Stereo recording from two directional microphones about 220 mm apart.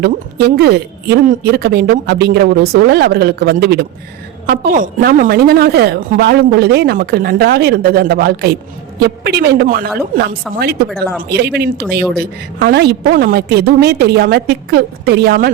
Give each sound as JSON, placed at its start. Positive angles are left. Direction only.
{"t": 0.0, "sound": "a woman's voice", "side_deg": -45}
{"t": 10.8, "sound": "speech", "side_deg": 0}
{"t": 11.2, "sound": "a woman's voice", "side_deg": -50}